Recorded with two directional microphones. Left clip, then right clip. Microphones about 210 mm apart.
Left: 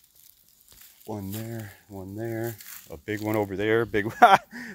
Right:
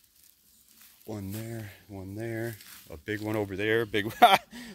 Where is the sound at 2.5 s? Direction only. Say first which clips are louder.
Left 3 dB; 55° left (ahead or behind).